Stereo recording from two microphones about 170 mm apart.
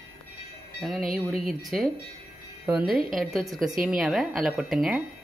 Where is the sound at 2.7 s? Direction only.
5° right (ahead or behind).